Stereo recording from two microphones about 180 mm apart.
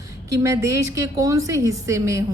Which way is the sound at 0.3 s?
15° right (ahead or behind).